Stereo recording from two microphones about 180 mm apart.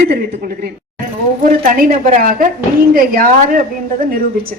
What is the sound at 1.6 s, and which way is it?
A woman's voice, 45° right (ahead or behind).